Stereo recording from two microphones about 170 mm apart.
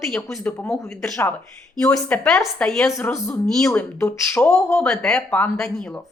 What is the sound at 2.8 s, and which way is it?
Speech, 15° left (ahead or behind).